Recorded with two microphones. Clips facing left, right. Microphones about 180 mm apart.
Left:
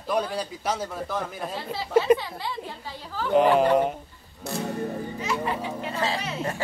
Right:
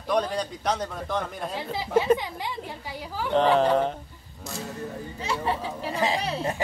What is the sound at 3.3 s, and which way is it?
Speech, 10° left (ahead or behind).